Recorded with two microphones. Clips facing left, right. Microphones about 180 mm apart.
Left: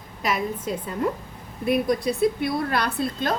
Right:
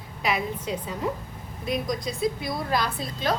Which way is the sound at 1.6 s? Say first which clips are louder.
Left 6 dB; 60° left (ahead or behind).